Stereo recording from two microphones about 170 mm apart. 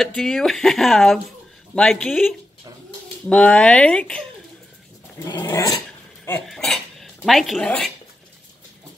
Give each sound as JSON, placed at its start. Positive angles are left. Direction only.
{"t": 0.0, "sound": "speech", "side_deg": 5}
{"t": 5.2, "sound": "dog", "side_deg": 20}
{"t": 6.4, "sound": "speech", "side_deg": 0}